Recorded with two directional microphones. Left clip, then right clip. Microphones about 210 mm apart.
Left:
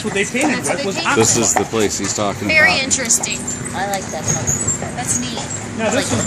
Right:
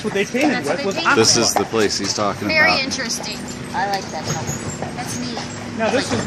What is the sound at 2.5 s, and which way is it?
Speech, 90° left.